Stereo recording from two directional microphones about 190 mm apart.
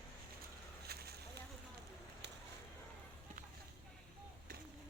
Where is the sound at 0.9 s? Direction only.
55° right (ahead or behind).